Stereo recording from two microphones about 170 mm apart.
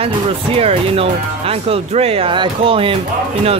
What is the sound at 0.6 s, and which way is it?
Speech, 35° right (ahead or behind).